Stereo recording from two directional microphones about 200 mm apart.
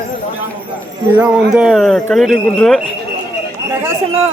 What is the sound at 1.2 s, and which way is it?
Speech, 5° right (ahead or behind).